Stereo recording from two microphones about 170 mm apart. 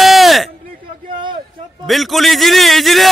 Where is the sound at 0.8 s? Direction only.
30° right (ahead or behind).